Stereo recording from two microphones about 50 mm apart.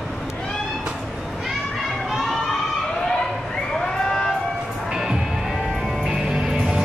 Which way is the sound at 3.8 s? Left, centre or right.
Centre.